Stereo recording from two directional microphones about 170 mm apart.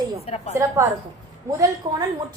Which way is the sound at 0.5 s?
15° right (ahead or behind).